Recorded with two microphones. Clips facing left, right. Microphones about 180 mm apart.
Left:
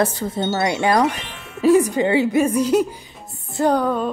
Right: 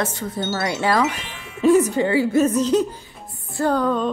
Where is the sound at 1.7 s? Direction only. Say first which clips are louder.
Left 1 dB; 15° left (ahead or behind).